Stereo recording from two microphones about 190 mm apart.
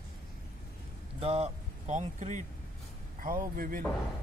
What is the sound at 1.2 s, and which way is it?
Speech, 30° right (ahead or behind).